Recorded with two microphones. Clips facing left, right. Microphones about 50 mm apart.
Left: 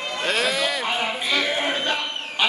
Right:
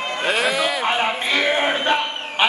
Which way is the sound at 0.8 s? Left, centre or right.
Right.